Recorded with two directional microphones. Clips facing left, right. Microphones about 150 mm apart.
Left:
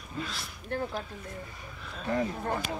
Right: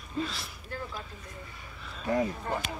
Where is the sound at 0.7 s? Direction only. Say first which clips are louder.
Left 7 dB; 60° left (ahead or behind).